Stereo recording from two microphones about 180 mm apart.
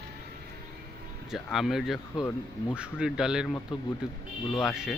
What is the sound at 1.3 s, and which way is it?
Speech, centre (ahead or behind).